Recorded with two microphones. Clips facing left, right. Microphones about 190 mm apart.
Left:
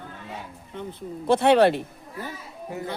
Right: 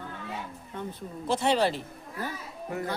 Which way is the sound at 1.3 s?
60° left (ahead or behind).